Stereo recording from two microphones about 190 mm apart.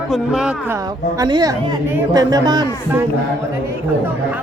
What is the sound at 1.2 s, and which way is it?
Speech, 20° right (ahead or behind).